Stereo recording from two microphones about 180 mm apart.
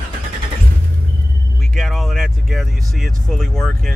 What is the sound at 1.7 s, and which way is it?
Speech, centre (ahead or behind).